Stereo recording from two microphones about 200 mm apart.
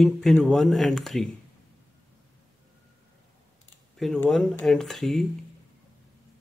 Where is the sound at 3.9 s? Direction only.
Centre (ahead or behind).